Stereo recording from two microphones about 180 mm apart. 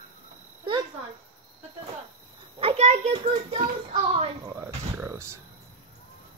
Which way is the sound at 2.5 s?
35° right (ahead or behind).